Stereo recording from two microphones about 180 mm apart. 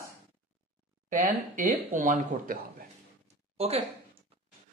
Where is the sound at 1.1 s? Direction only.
45° right (ahead or behind).